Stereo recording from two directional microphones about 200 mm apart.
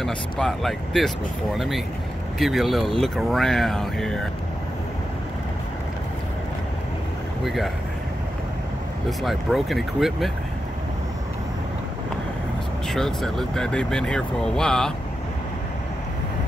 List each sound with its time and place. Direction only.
0.0 s speech: centre (ahead or behind)
2.3 s speech: centre (ahead or behind)
7.4 s speech: centre (ahead or behind)
9.2 s speech: centre (ahead or behind)
12.9 s speech: centre (ahead or behind)